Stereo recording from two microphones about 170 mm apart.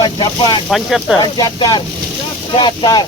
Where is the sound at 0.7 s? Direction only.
Centre (ahead or behind).